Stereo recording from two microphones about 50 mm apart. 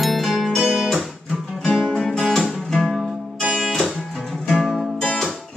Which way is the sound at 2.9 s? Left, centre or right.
Centre.